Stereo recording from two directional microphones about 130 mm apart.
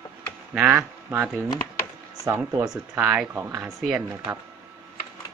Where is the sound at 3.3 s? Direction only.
20° right (ahead or behind).